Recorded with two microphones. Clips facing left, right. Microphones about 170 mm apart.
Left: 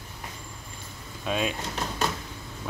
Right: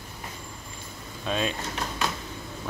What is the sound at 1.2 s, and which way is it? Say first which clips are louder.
Speech: even; 10° left (ahead or behind).